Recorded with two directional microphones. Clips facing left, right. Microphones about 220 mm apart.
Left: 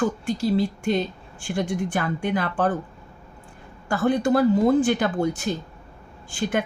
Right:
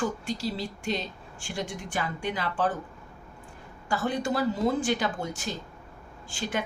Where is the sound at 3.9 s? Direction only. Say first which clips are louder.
Left 8 dB; 55° left (ahead or behind).